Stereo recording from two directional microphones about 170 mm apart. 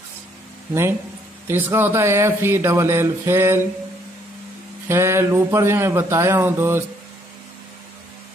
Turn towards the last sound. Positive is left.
turn(degrees=-15)  # may be behind; listen again after turning